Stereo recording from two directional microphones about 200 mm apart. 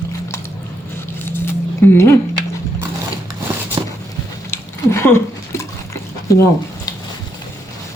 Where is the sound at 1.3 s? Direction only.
10° left (ahead or behind).